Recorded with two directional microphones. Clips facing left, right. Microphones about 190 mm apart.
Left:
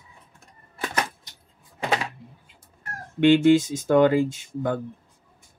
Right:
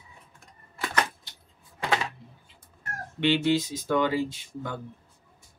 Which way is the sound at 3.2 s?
50° left (ahead or behind).